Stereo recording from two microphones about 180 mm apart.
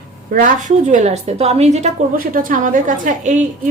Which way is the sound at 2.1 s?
50° right (ahead or behind).